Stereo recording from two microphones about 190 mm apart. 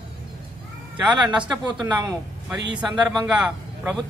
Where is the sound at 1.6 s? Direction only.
25° right (ahead or behind).